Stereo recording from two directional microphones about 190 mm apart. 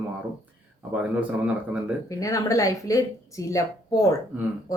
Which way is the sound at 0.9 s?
5° right (ahead or behind).